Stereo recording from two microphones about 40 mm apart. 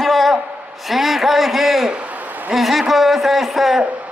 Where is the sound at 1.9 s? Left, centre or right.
Right.